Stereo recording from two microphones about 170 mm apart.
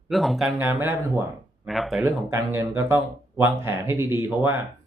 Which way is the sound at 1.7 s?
Centre (ahead or behind).